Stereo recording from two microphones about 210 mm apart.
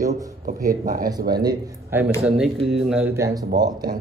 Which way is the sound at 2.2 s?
Centre (ahead or behind).